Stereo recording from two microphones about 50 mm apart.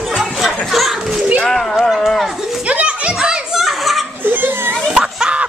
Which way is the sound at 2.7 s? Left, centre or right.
Right.